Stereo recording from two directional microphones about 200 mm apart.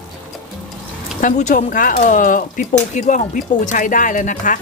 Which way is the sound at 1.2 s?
40° left (ahead or behind).